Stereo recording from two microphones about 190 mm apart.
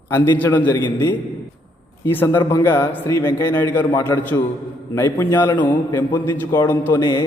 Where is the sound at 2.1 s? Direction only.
10° left (ahead or behind).